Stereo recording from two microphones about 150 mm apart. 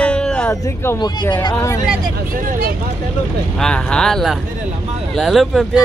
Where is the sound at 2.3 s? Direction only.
75° right (ahead or behind).